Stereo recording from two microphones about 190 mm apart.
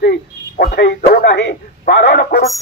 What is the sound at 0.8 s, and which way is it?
Speech, 60° left (ahead or behind).